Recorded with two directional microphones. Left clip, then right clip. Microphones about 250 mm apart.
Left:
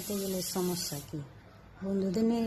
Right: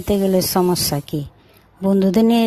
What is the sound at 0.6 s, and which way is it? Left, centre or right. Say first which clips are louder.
Speech: right 15 dB; right.